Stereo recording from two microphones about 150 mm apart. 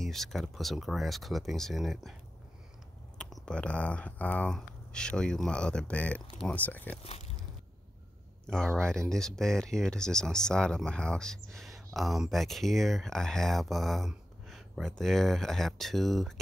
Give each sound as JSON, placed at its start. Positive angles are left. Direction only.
{"t": 0.0, "sound": "speech", "side_deg": 0}
{"t": 3.2, "sound": "speech", "side_deg": 0}
{"t": 7.0, "sound": "speech", "side_deg": 45}
{"t": 8.5, "sound": "speech", "side_deg": 5}